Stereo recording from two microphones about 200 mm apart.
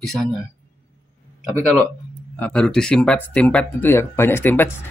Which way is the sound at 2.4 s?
5° left (ahead or behind).